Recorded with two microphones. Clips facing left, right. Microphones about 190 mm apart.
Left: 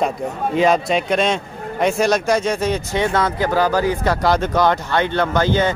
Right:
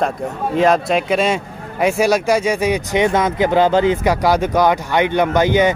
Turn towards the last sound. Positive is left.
turn(degrees=-15)  # may be behind; listen again after turning